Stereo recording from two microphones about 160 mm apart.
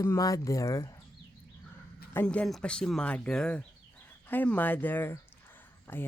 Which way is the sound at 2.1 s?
10° left (ahead or behind).